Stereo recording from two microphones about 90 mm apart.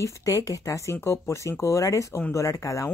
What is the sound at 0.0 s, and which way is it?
Speech, 40° left (ahead or behind).